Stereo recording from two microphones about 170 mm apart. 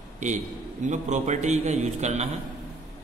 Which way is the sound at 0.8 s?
45° right (ahead or behind).